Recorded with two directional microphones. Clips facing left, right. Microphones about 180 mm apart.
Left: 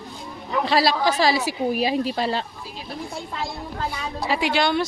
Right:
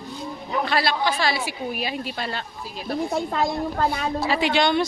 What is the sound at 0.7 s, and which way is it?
Speech, 35° left (ahead or behind).